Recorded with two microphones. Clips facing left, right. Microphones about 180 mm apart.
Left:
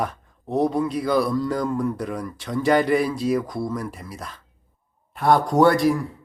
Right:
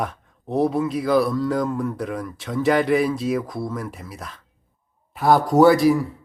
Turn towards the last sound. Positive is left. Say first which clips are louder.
# right 3 dB
turn(degrees=0)  # may be behind; listen again after turning